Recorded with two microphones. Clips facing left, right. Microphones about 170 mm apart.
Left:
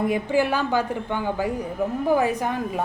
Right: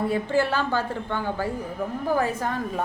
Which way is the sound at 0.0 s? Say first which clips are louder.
Left 2 dB; 15° left (ahead or behind).